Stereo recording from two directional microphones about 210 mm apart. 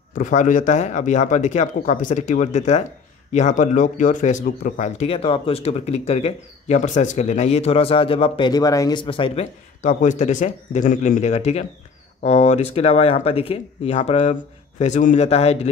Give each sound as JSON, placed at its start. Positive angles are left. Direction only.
{"t": 0.1, "sound": "speech", "side_deg": 35}